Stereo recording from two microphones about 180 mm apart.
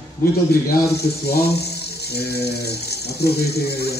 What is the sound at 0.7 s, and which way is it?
Speech, 60° left (ahead or behind).